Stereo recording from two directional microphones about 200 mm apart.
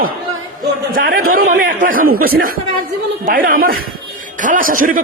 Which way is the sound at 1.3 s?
90° right.